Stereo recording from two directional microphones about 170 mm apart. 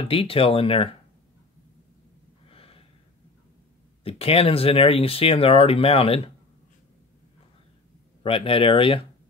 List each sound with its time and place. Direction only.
0.0 s speech: 35° left (ahead or behind)
2.4 s gasp: 35° left (ahead or behind)
4.0 s speech: 35° left (ahead or behind)
8.2 s speech: 30° left (ahead or behind)